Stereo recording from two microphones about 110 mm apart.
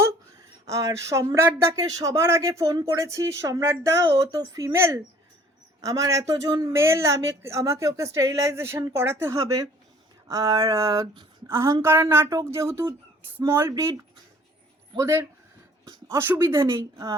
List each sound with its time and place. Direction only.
0.7 s speech: 30° right (ahead or behind)